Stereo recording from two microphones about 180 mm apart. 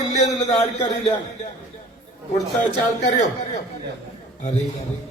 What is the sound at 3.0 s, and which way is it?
Speech, 40° left (ahead or behind).